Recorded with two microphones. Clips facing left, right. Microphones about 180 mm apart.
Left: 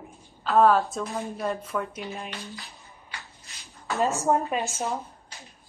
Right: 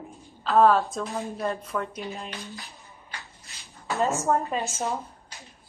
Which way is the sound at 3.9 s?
20° right (ahead or behind).